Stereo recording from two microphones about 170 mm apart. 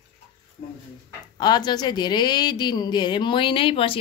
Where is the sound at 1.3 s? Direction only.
25° left (ahead or behind).